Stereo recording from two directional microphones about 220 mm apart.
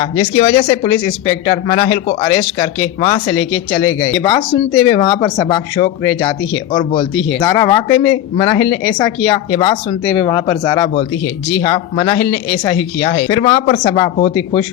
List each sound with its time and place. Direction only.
0.0 s speech: 25° left (ahead or behind)
7.3 s speech: 15° left (ahead or behind)
13.2 s speech: 20° left (ahead or behind)